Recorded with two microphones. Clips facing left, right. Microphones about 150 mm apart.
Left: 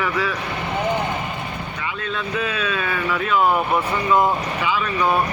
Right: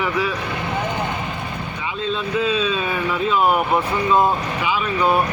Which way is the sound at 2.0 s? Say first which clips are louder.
Right 5 dB; 20° right (ahead or behind).